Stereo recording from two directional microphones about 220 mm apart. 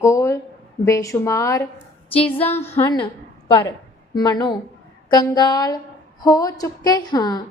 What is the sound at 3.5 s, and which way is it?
A woman's voice, 20° left (ahead or behind).